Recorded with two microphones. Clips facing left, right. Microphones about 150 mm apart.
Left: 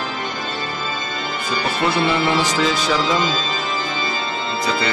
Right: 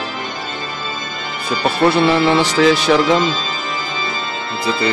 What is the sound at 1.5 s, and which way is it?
Speech, 65° right (ahead or behind).